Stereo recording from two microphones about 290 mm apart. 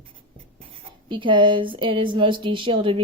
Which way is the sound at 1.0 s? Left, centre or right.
Centre.